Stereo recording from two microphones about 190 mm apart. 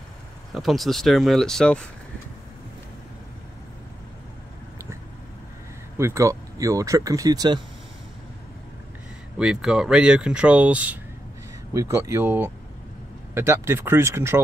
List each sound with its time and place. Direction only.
0.6 s speech: centre (ahead or behind)
5.9 s speech: 15° right (ahead or behind)
9.4 s speech: 5° right (ahead or behind)